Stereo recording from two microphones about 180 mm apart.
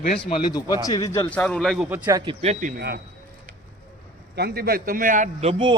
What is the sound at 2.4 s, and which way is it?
Speech, 40° right (ahead or behind).